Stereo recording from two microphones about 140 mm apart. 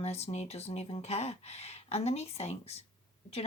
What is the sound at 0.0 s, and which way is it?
Speech, 50° left (ahead or behind).